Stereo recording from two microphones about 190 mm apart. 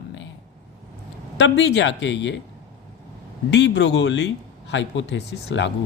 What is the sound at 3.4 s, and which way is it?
A woman's voice, 65° left (ahead or behind).